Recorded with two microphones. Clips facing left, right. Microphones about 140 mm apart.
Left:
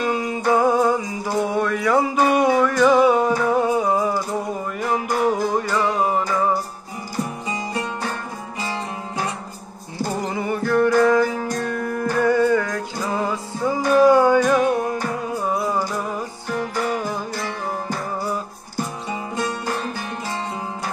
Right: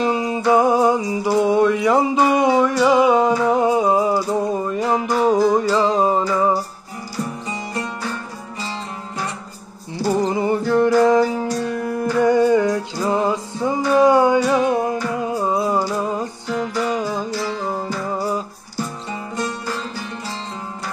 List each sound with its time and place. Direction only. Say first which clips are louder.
0.0 s music: right 3 dB; 20° right (ahead or behind)
10.1 s music: right 6 dB; 25° right (ahead or behind)
16.4 s music: right 1 dB; 50° left (ahead or behind)
16.9 s music: right 3 dB; 20° right (ahead or behind)
17.3 s music: right 3 dB; 50° left (ahead or behind)
19.6 s music: left 1 dB; 55° left (ahead or behind)